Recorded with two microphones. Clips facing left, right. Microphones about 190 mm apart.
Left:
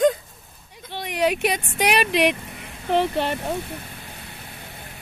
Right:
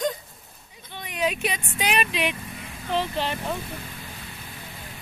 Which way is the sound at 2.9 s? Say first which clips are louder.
Left 5 dB; 60° left (ahead or behind).